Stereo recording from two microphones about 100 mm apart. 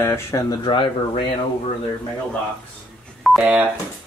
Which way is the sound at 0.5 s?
50° left (ahead or behind).